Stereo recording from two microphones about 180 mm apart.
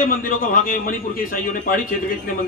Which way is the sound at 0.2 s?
50° left (ahead or behind).